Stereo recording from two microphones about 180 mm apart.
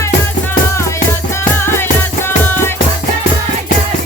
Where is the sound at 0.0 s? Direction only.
15° left (ahead or behind).